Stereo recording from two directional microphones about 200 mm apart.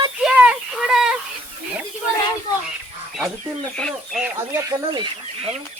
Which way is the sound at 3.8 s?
Centre (ahead or behind).